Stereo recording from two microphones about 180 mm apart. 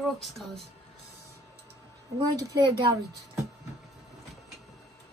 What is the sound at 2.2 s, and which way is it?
Speech, 20° right (ahead or behind).